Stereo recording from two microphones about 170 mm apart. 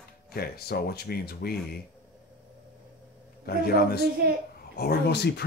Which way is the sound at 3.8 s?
65° left (ahead or behind).